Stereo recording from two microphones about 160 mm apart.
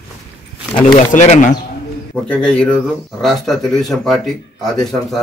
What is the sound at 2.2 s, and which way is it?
Speech, 5° left (ahead or behind).